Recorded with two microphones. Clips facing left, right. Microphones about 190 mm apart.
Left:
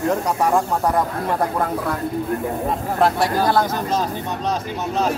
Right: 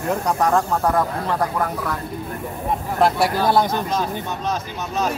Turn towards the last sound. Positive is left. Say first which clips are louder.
# even
turn(degrees=-5)  # may be behind; listen again after turning